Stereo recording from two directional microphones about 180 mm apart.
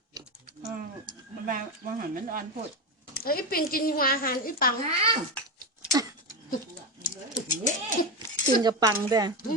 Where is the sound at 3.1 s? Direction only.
55° left (ahead or behind).